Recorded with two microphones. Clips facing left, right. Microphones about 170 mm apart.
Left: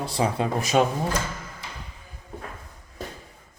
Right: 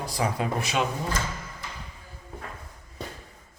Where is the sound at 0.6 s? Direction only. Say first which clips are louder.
Left 9 dB; 45° left (ahead or behind).